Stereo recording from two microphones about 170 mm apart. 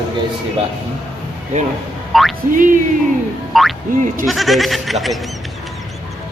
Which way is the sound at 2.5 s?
50° right (ahead or behind).